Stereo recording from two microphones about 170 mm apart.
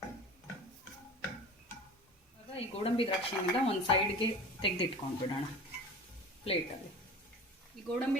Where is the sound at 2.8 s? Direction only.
30° left (ahead or behind).